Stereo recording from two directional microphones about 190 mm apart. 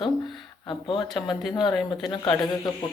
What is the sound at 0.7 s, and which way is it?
Speech, 25° left (ahead or behind).